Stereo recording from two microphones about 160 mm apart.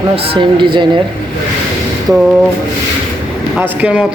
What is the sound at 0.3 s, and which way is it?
Speech, 30° right (ahead or behind).